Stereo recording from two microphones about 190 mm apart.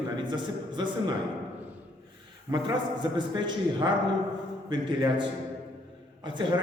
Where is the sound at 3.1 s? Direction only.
25° right (ahead or behind).